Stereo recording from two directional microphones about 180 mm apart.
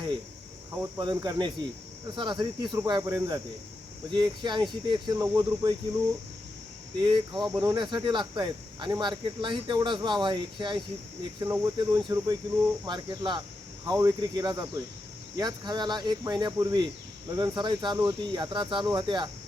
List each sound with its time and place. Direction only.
0.8 s speech: 25° right (ahead or behind)
7.0 s speech: 25° right (ahead or behind)
11.4 s cricket: 10° right (ahead or behind)
11.8 s speech: 25° right (ahead or behind)